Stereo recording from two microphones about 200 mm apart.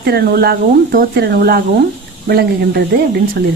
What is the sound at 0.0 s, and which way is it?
Speech, 55° right (ahead or behind).